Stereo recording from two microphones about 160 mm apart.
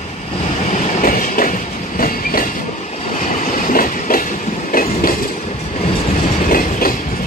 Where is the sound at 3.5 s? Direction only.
60° left (ahead or behind).